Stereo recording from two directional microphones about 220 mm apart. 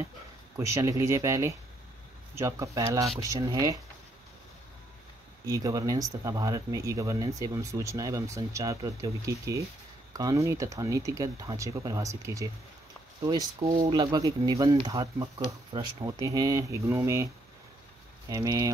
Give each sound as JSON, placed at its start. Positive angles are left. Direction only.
{"t": 0.6, "sound": "speech", "side_deg": -15}
{"t": 5.4, "sound": "speech", "side_deg": -15}
{"t": 18.3, "sound": "speech", "side_deg": -15}